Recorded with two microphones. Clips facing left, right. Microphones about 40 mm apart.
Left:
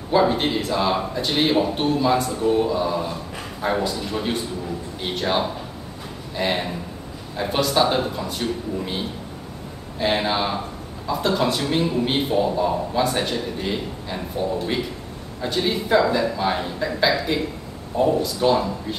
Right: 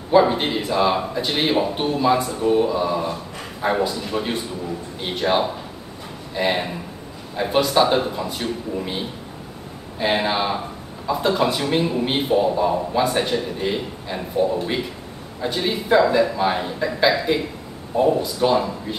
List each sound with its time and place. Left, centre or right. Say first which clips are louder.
0.1 s a man's voice: right 2 dB; centre